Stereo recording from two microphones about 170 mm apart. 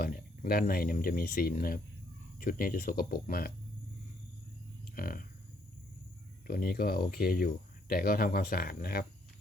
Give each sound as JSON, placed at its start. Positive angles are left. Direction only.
{"t": 0.0, "sound": "speech", "side_deg": 60}
{"t": 4.9, "sound": "speech", "side_deg": 55}
{"t": 6.5, "sound": "speech", "side_deg": 60}